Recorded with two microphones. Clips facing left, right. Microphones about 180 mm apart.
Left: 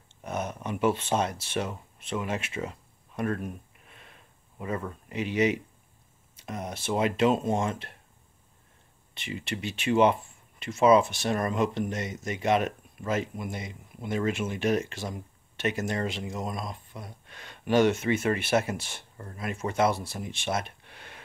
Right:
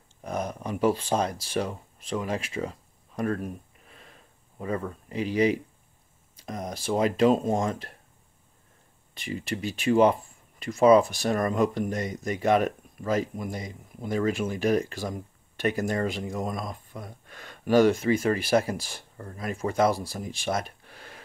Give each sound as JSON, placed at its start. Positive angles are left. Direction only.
{"t": 0.2, "sound": "speech", "side_deg": -35}
{"t": 9.1, "sound": "speech", "side_deg": -35}